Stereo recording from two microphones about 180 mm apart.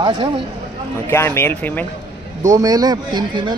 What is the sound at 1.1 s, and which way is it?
Speech, 15° left (ahead or behind).